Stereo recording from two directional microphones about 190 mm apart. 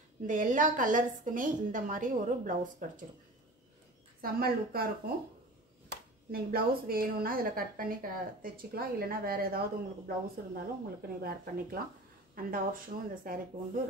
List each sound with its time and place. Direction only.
0.3 s a woman's voice: 45° right (ahead or behind)
4.2 s a woman's voice: 50° right (ahead or behind)
6.3 s a woman's voice: 50° right (ahead or behind)